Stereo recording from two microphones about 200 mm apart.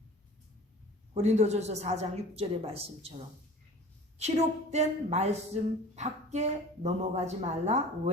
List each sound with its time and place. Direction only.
1.1 s speech: 35° right (ahead or behind)
4.2 s speech: 35° right (ahead or behind)